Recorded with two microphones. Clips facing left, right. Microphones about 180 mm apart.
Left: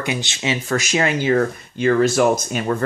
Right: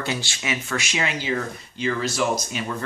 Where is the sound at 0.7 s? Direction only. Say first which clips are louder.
Left 9 dB; 45° left (ahead or behind).